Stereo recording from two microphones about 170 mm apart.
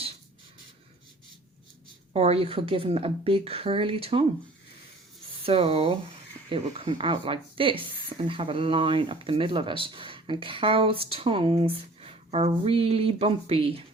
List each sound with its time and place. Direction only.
2.1 s speech: 35° right (ahead or behind)
5.4 s speech: 35° right (ahead or behind)